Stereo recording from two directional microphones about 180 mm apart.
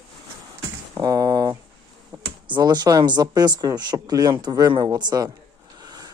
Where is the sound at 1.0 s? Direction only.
20° right (ahead or behind).